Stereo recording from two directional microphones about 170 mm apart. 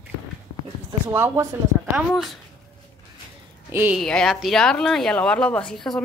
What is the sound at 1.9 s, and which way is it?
Speech, centre (ahead or behind).